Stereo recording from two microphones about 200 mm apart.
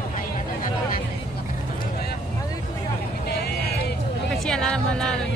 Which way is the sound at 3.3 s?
55° left (ahead or behind).